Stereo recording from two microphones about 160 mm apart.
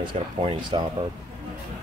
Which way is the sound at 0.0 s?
35° right (ahead or behind).